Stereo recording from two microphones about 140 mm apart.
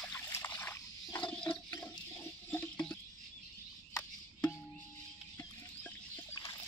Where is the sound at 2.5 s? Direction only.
15° left (ahead or behind).